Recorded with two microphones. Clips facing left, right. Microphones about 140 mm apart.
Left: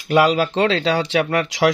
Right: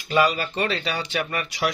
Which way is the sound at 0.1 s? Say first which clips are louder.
Left 6 dB; 85° left.